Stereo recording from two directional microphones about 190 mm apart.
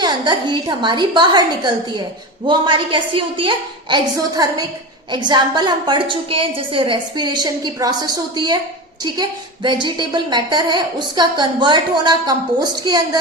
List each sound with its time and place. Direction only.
0.0 s a woman's voice: 25° right (ahead or behind)
9.6 s a woman's voice: 25° right (ahead or behind)